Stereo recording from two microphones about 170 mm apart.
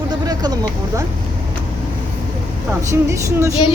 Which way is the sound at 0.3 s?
20° right (ahead or behind).